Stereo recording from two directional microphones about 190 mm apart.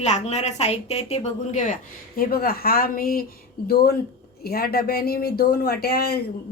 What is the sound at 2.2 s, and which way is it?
Speech, 50° left (ahead or behind).